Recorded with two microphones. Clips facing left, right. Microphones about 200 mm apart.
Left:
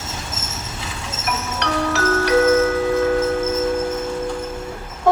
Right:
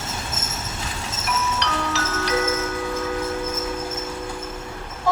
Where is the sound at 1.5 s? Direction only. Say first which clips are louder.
Left 4 dB; 55° left (ahead or behind).